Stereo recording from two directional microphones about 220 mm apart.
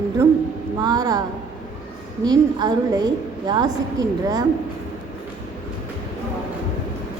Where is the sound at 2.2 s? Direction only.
20° right (ahead or behind).